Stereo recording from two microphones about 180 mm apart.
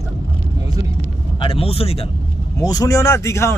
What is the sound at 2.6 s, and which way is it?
Speech, 20° left (ahead or behind).